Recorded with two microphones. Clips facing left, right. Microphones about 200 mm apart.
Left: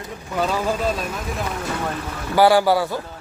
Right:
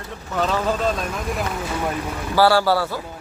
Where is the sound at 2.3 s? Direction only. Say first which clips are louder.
Left 2 dB; 15° left (ahead or behind).